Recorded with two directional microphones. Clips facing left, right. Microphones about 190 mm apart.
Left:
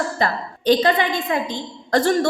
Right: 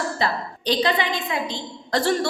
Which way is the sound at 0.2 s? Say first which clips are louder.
Left 2 dB; 50° left (ahead or behind).